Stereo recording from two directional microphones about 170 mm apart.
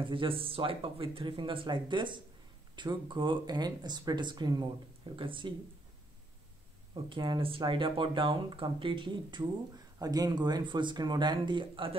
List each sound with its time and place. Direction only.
0.0 s speech: 30° right (ahead or behind)
7.1 s speech: 30° right (ahead or behind)